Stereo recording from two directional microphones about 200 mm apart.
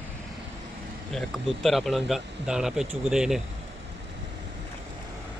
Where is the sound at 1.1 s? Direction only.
Centre (ahead or behind).